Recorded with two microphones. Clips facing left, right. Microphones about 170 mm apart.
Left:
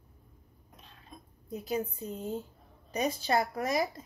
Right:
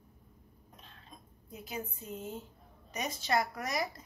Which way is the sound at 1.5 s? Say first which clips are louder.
Left 8 dB; 35° left (ahead or behind).